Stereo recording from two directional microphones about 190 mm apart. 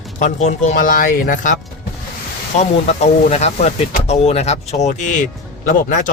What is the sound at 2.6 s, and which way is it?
Speech, 35° left (ahead or behind).